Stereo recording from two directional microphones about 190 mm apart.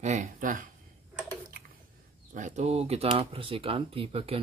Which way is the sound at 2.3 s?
40° right (ahead or behind).